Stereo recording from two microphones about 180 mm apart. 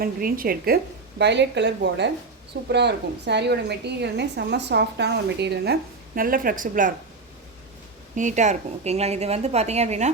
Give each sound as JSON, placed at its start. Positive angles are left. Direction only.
{"t": 0.0, "sound": "speech", "side_deg": -55}
{"t": 1.2, "sound": "a woman's voice", "side_deg": -75}
{"t": 6.1, "sound": "speech", "side_deg": -50}
{"t": 8.1, "sound": "a woman's voice", "side_deg": -45}